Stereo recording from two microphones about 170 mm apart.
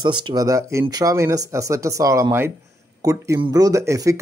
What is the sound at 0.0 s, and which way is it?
Speech, 25° right (ahead or behind).